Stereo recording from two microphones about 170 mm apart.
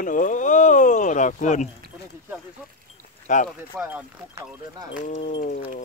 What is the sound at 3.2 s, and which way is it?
Speech, 50° left (ahead or behind).